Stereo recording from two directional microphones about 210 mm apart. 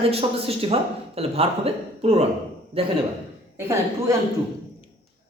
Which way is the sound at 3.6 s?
10° right (ahead or behind).